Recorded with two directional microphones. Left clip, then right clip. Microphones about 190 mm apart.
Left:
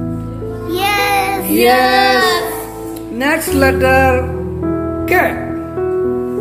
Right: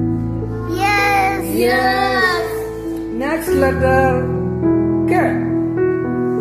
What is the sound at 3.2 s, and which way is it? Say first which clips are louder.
Speech: left 4 dB; centre (ahead or behind).